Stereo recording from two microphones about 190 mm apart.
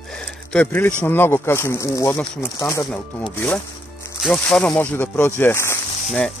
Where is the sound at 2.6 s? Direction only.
20° left (ahead or behind).